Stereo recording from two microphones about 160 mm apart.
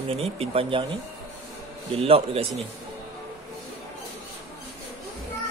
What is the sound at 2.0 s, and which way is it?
Speech, 35° right (ahead or behind).